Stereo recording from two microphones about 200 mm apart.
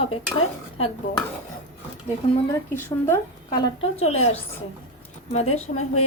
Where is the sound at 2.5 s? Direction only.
15° left (ahead or behind).